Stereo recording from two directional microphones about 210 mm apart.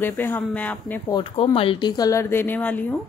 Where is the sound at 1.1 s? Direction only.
25° left (ahead or behind).